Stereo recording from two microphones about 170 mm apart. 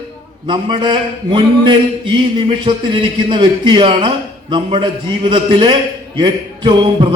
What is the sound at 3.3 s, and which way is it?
A man's voice, 30° right (ahead or behind).